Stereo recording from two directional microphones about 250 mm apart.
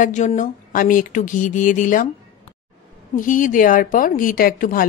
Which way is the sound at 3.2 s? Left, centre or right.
Left.